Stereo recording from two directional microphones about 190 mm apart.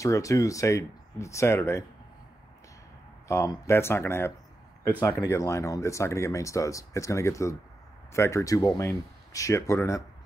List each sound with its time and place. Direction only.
0.0 s speech: 15° left (ahead or behind)
3.3 s speech: 15° left (ahead or behind)